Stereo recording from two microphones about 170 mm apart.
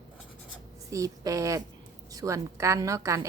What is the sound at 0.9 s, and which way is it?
A woman's voice, 20° right (ahead or behind).